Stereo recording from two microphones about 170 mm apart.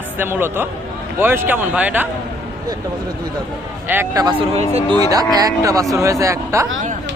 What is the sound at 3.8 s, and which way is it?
A man's voice, 15° right (ahead or behind).